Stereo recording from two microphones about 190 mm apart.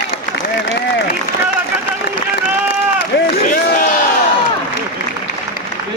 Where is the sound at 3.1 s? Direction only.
65° left (ahead or behind).